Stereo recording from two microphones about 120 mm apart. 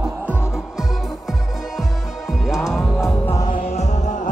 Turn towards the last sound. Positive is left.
turn(degrees=80)